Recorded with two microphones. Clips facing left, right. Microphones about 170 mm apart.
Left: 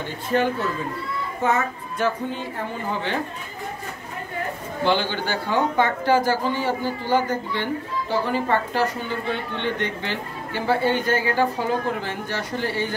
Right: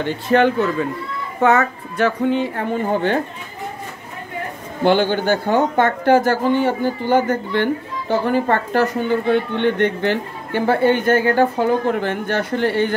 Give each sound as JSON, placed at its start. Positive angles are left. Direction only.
{"t": 0.0, "sound": "a woman's voice", "side_deg": -75}
{"t": 4.8, "sound": "speech", "side_deg": -50}